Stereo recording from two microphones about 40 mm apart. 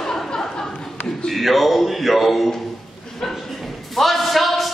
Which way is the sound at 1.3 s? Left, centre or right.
Centre.